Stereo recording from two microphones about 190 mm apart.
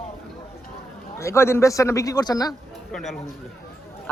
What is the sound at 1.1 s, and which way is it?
Speech, 15° left (ahead or behind).